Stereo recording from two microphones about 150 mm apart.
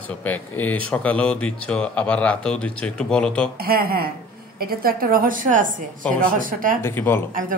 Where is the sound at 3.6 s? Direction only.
90° right.